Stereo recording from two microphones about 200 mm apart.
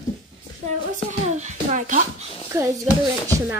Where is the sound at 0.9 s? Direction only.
35° right (ahead or behind).